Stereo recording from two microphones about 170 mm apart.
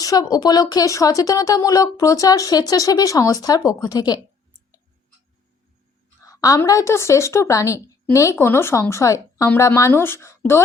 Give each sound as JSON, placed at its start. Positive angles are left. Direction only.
{"t": 0.0, "sound": "speech", "side_deg": 20}
{"t": 6.2, "sound": "a woman's voice", "side_deg": 20}